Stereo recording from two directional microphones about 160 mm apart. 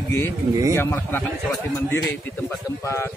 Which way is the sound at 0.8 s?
10° left (ahead or behind).